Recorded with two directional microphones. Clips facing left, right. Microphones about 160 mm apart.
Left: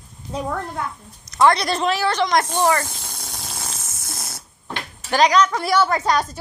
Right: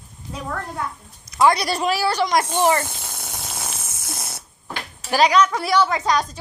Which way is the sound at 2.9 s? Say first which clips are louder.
Right 1 dB; centre (ahead or behind).